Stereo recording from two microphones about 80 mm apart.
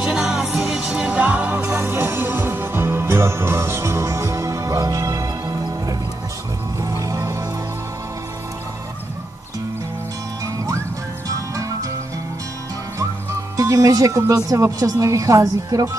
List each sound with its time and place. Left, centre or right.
0.0 s music: centre; by 7.4 s right
10.4 s music: right
13.0 s music: right
14.8 s a woman's voice: right